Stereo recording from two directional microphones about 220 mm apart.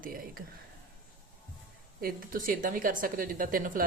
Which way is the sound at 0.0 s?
40° right (ahead or behind).